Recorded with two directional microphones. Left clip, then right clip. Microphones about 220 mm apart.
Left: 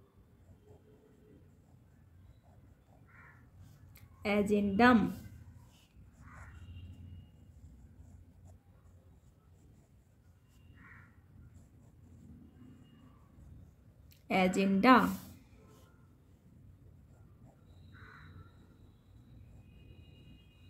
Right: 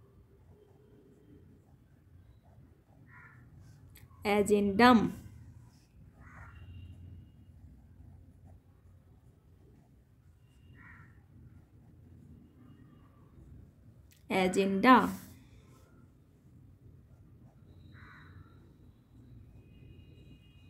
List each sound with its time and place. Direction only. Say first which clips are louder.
3.9 s a woman's voice: right 3 dB; 15° right (ahead or behind)
14.2 s a woman's voice: right 1 dB; 10° right (ahead or behind)